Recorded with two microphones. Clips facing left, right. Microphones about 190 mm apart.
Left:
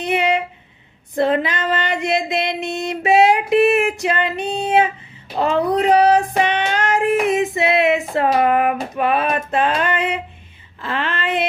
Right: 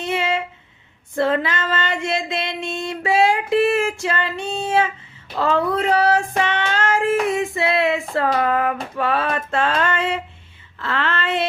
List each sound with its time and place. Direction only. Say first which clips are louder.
0.0 s a sound: left 4 dB; 15° left (ahead or behind)
1.1 s child singing: left 2 dB; 20° left (ahead or behind)
10.8 s speech: even; 15° left (ahead or behind)